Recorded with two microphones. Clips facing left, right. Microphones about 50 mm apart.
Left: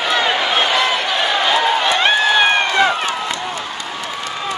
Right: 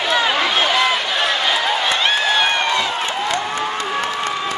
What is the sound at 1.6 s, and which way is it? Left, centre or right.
Run, left.